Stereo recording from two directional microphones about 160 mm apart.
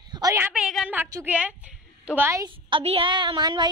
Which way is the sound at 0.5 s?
5° right (ahead or behind).